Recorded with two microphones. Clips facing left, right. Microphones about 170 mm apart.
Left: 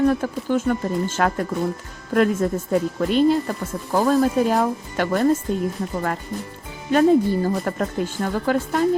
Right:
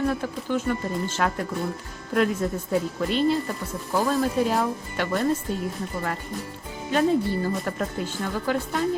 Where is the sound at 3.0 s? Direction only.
45° left (ahead or behind).